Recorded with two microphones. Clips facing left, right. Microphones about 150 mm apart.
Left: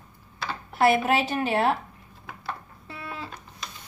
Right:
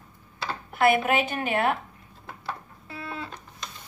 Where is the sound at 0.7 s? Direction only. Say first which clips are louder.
Left 1 dB; 35° left (ahead or behind).